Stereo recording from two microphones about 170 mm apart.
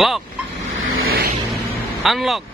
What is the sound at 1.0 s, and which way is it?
Vehicle, 65° right (ahead or behind).